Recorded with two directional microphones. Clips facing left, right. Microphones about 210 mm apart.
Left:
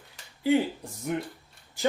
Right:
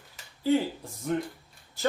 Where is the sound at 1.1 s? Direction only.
15° left (ahead or behind).